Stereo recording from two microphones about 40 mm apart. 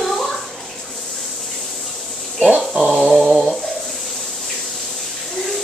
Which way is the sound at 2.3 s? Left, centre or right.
Centre.